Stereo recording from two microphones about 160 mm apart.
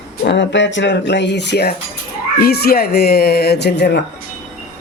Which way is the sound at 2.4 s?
75° left (ahead or behind).